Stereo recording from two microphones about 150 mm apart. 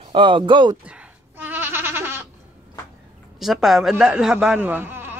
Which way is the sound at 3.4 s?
Centre (ahead or behind).